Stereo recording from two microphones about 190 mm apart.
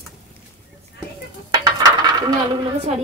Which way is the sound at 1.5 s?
20° right (ahead or behind).